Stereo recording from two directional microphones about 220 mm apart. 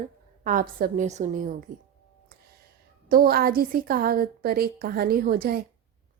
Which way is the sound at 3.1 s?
40° right (ahead or behind).